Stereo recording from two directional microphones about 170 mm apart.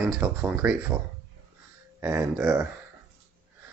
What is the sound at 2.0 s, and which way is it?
Speech, 15° right (ahead or behind).